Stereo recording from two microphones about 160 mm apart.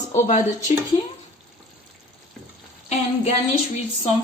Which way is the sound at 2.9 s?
40° left (ahead or behind).